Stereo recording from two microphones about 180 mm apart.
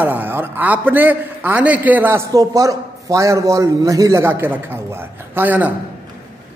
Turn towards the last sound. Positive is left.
turn(degrees=-10)  # may be behind; listen again after turning